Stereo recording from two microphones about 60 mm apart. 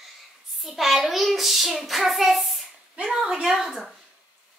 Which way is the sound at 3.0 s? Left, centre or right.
Centre.